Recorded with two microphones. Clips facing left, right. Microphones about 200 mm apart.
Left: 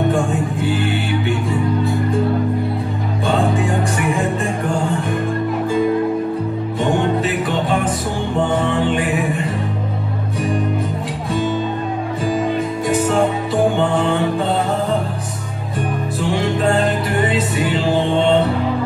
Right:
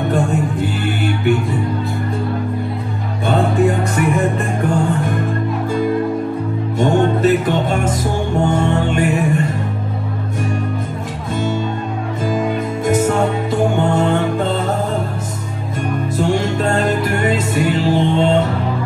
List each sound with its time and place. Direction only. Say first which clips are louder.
7.2 s music: right 5 dB; 45° right (ahead or behind)
12.8 s music: right 4 dB; 45° right (ahead or behind)